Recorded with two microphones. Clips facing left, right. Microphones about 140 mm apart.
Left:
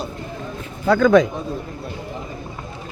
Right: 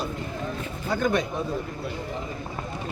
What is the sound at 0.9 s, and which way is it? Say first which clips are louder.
Speech: left 11 dB; 90° left.